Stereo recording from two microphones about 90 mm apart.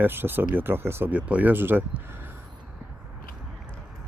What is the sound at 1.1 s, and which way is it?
Speech, 15° right (ahead or behind).